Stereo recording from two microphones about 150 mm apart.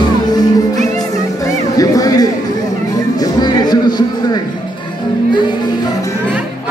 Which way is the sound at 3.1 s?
25° left (ahead or behind).